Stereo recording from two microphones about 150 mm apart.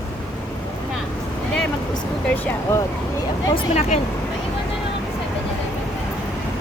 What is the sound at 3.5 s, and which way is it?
Speech, 45° left (ahead or behind).